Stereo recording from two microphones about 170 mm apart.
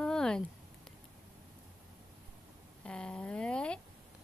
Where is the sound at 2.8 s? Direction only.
5° left (ahead or behind).